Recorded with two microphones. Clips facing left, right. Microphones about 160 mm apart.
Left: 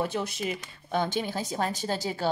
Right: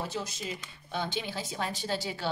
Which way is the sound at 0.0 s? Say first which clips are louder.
Left 6 dB; 60° left (ahead or behind).